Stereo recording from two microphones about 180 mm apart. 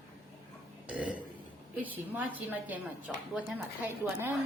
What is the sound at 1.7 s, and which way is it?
A woman's voice, 10° right (ahead or behind).